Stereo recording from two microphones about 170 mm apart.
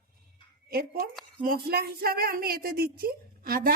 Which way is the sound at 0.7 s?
60° right (ahead or behind).